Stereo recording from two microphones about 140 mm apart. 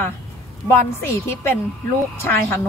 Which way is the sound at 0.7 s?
15° left (ahead or behind).